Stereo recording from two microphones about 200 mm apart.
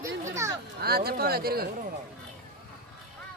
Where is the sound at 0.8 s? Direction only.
50° right (ahead or behind).